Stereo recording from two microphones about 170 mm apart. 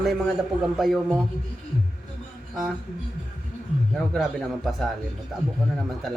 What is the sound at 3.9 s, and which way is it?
A man's voice, centre (ahead or behind).